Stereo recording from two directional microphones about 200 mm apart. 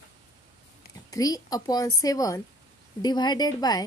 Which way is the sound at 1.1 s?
20° left (ahead or behind).